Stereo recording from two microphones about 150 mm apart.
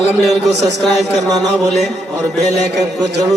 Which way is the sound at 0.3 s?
Centre (ahead or behind).